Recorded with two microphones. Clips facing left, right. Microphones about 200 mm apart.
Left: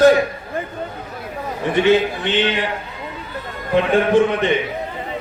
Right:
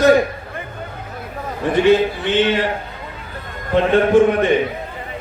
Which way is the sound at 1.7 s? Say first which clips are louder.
Right 1 dB; 20° left (ahead or behind).